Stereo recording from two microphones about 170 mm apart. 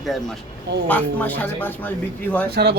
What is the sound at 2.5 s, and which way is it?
Speech, 75° right (ahead or behind).